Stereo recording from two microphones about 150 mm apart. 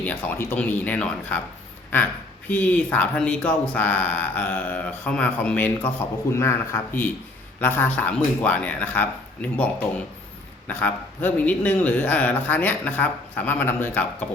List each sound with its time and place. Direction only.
0.0 s speech: 10° left (ahead or behind)
2.5 s speech: 10° left (ahead or behind)
10.7 s speech: 10° left (ahead or behind)